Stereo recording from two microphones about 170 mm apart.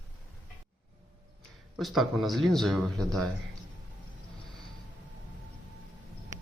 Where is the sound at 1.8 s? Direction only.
Centre (ahead or behind).